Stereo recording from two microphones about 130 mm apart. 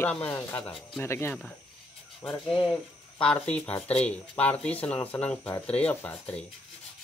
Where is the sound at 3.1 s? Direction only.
5° left (ahead or behind).